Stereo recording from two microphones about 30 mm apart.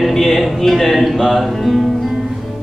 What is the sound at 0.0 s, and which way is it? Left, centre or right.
Music, centre.